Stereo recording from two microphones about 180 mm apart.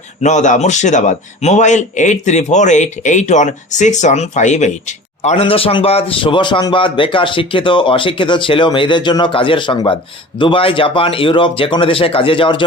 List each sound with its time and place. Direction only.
0.2 s speech: 40° left (ahead or behind)